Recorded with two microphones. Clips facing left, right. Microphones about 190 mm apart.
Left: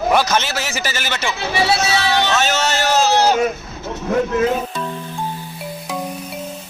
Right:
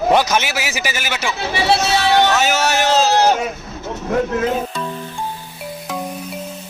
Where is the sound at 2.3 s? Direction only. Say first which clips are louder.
Right 2 dB; 10° right (ahead or behind).